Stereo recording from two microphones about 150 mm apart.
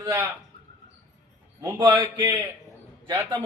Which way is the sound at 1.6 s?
25° right (ahead or behind).